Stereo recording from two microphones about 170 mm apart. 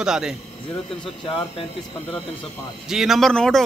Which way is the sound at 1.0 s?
30° left (ahead or behind).